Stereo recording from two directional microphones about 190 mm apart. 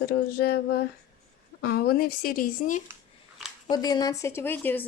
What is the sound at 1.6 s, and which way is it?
Speech, 55° left (ahead or behind).